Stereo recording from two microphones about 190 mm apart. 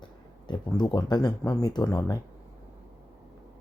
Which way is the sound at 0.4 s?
20° left (ahead or behind).